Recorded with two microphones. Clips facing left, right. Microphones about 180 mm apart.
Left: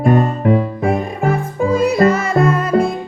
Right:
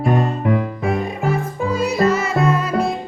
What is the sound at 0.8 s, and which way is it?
Music, 50° left (ahead or behind).